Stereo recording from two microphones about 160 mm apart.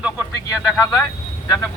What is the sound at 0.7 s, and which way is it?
Speech, 20° left (ahead or behind).